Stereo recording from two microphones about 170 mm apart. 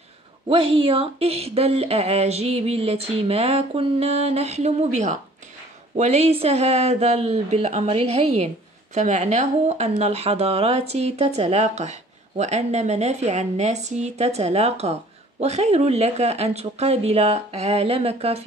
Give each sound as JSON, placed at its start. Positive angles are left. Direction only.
{"t": 0.5, "sound": "speech", "side_deg": -30}